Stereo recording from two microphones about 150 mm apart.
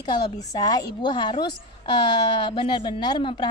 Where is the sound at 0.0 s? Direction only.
30° left (ahead or behind).